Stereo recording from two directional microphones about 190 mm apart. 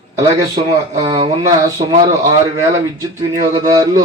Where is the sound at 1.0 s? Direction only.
20° right (ahead or behind).